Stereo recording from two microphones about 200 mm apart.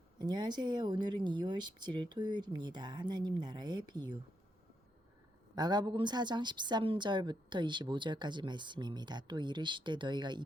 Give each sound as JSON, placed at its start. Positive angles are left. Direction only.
{"t": 0.2, "sound": "a woman's voice", "side_deg": -20}
{"t": 5.5, "sound": "a woman's voice", "side_deg": -20}